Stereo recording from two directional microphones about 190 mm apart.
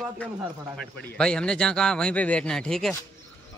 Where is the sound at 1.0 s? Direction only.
5° left (ahead or behind).